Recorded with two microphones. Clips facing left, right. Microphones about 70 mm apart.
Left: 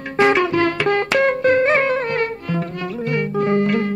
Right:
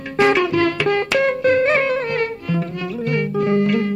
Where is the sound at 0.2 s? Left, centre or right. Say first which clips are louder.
Even; left.